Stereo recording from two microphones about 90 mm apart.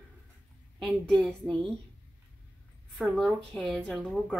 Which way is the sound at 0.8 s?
5° left (ahead or behind).